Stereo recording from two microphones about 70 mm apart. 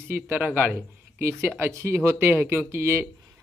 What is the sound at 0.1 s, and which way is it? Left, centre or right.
Speech, right.